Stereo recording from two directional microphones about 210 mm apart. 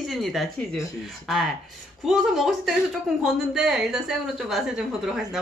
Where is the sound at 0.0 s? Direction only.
Centre (ahead or behind).